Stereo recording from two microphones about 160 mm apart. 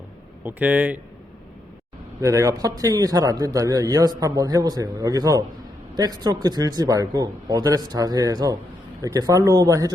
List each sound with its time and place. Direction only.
0.4 s speech: 10° right (ahead or behind)
2.2 s speech: 20° right (ahead or behind)